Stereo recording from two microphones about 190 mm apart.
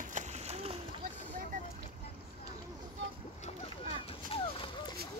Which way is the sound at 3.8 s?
30° left (ahead or behind).